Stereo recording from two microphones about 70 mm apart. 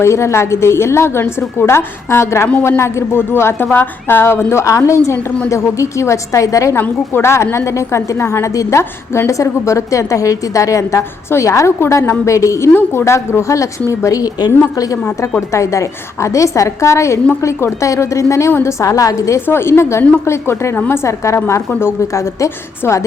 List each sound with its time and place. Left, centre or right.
0.0 s a woman's voice: left
6.7 s a woman's voice: left
9.3 s a woman's voice: left
15.5 s a woman's voice: left
19.5 s a woman's voice: left
20.7 s a woman's voice: left
21.0 s a woman's voice: left
22.0 s a woman's voice: left